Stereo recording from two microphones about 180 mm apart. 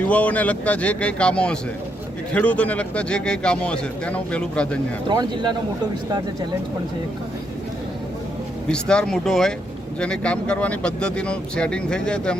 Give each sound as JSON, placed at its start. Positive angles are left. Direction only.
{"t": 0.0, "sound": "a man's voice", "side_deg": 10}
{"t": 5.0, "sound": "speech", "side_deg": -25}
{"t": 8.7, "sound": "speech", "side_deg": 5}